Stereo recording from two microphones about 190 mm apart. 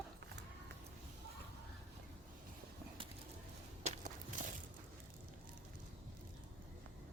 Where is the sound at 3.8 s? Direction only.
40° right (ahead or behind).